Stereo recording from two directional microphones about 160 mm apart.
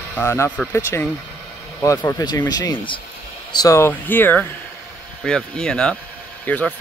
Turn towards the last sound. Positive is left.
turn(degrees=10)  # may be behind; listen again after turning